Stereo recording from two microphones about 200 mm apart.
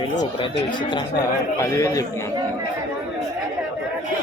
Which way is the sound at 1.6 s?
15° left (ahead or behind).